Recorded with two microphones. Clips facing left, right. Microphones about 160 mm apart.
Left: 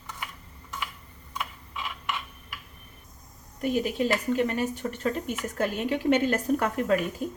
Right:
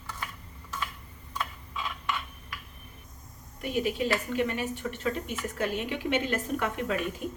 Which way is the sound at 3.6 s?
40° left (ahead or behind).